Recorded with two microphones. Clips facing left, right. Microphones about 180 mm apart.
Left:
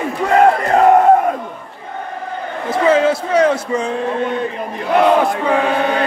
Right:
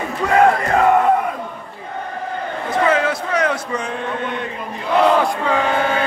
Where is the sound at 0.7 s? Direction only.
40° left (ahead or behind).